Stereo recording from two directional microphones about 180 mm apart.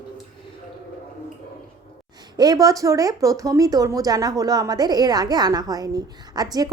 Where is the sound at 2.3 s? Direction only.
20° right (ahead or behind).